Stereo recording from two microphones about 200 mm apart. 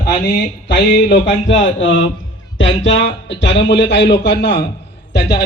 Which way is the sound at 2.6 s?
65° left (ahead or behind).